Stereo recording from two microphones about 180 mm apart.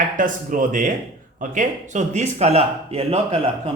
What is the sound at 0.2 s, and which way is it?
Speech, 50° right (ahead or behind).